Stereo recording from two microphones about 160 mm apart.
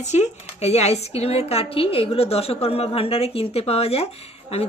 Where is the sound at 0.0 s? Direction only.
45° left (ahead or behind).